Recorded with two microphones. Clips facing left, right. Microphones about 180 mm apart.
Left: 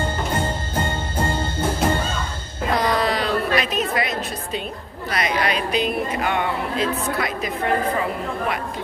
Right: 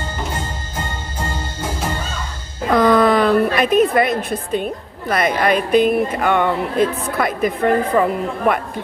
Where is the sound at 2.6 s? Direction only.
50° right (ahead or behind).